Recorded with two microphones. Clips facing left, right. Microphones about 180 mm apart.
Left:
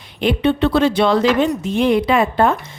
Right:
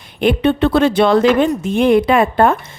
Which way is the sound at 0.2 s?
50° right (ahead or behind).